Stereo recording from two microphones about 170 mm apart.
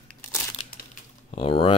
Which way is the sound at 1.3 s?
35° left (ahead or behind).